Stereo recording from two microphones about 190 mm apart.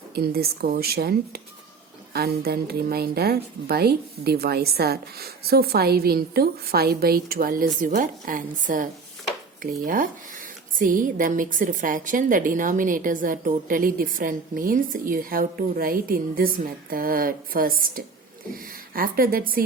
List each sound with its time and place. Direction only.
0.2 s a woman's voice: 55° right (ahead or behind)